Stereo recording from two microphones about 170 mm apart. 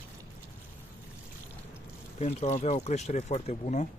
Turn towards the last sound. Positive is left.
turn(degrees=45)  # may be behind; listen again after turning